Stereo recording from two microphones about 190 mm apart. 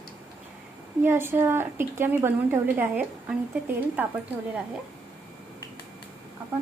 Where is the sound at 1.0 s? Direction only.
10° right (ahead or behind).